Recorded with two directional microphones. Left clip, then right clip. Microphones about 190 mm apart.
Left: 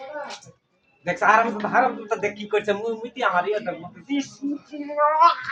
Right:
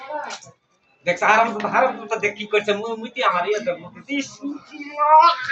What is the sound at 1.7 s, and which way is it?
Speech, 5° left (ahead or behind).